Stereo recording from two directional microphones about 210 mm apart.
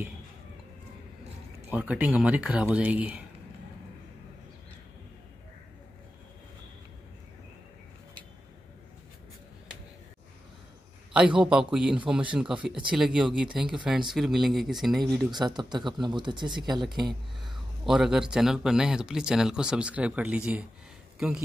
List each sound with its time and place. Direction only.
1.7 s speech: 5° right (ahead or behind)
11.1 s speech: 5° right (ahead or behind)
15.3 s speech: 20° right (ahead or behind)
17.8 s speech: centre (ahead or behind)